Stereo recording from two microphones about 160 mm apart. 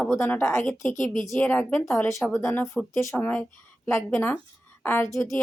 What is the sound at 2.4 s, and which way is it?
A woman's voice, 15° left (ahead or behind).